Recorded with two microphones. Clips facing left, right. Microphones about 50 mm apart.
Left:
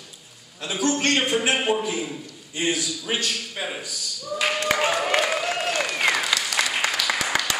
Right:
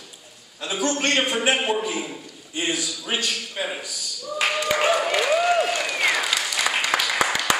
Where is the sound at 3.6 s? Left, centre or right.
Centre.